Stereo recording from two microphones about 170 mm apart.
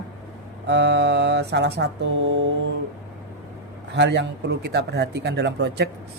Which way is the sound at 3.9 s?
90° right.